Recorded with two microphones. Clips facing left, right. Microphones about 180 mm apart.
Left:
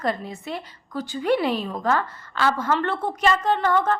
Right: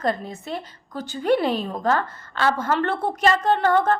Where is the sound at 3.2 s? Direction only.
50° right (ahead or behind).